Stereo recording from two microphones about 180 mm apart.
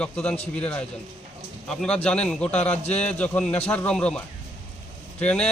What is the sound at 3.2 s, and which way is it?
Speech, 10° left (ahead or behind).